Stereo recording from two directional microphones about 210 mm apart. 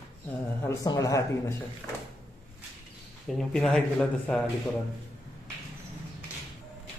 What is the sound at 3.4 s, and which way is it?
Speech, centre (ahead or behind).